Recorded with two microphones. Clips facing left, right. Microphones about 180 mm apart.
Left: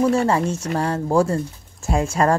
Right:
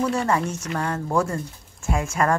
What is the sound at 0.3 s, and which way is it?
Speech, 30° left (ahead or behind).